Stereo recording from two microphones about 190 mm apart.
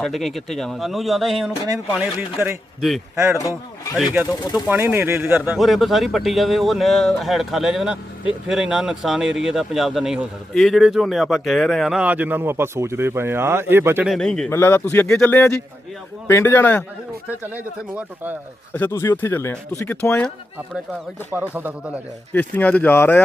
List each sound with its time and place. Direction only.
0.0 s speech: centre (ahead or behind)
3.9 s speech: 10° right (ahead or behind)
5.5 s speech: centre (ahead or behind)
14.1 s a man's voice: 5° left (ahead or behind)
17.2 s speech: 10° right (ahead or behind)
18.7 s a man's voice: 10° left (ahead or behind)
21.3 s speech: 10° right (ahead or behind)
22.3 s a man's voice: 10° left (ahead or behind)